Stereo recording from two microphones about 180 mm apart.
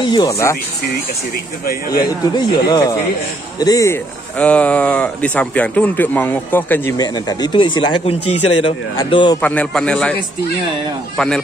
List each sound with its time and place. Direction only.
0.0 s a man's voice: 25° left (ahead or behind)
1.7 s a man's voice: 55° left (ahead or behind)
2.3 s a man's voice: 25° left (ahead or behind)
9.4 s speech: 5° left (ahead or behind)
11.1 s speech: 5° left (ahead or behind)